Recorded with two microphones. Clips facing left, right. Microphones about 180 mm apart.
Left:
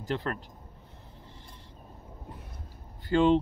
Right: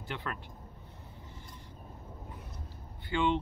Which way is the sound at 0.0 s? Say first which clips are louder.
Left 7 dB; 40° left (ahead or behind).